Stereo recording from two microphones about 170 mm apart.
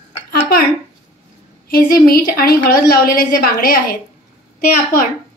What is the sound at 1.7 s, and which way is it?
A woman's voice, 60° left (ahead or behind).